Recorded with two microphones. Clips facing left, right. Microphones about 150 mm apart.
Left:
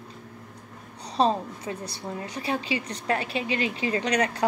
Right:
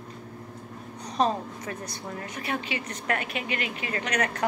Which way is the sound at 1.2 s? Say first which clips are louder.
Left 2 dB; 30° left (ahead or behind).